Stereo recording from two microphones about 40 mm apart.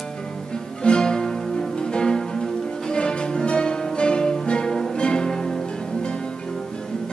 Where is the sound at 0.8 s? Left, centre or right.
Centre.